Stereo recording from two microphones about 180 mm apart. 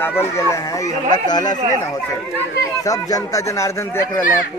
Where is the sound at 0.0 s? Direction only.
10° left (ahead or behind).